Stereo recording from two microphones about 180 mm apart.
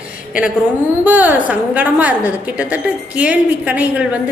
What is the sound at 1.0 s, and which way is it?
A woman's voice, 10° right (ahead or behind).